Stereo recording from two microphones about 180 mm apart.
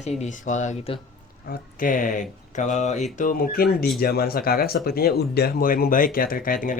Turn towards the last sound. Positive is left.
turn(degrees=50)  # may be behind; listen again after turning